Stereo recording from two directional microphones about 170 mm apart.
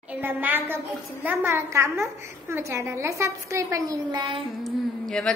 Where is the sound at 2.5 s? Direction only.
15° right (ahead or behind).